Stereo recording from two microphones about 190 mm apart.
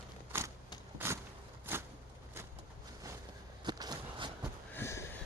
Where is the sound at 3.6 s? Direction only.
20° right (ahead or behind).